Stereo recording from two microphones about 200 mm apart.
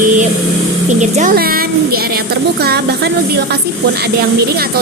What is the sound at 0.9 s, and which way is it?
Speech, 40° right (ahead or behind).